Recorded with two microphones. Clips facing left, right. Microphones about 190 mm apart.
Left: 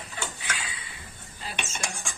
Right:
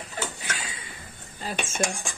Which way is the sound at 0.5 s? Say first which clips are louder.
Right 1 dB; 40° right (ahead or behind).